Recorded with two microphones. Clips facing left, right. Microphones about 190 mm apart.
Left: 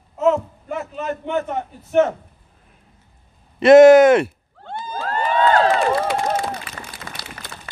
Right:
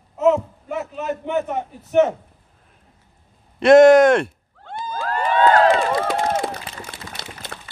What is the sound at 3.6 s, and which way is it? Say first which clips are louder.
Speech: left 2 dB; centre (ahead or behind).